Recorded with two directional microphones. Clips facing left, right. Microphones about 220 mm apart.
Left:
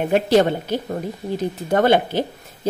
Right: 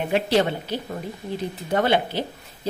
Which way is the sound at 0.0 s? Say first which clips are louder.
Left 5 dB; 45° left (ahead or behind).